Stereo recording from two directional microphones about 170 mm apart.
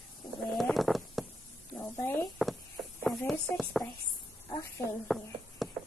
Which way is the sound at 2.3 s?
Centre (ahead or behind).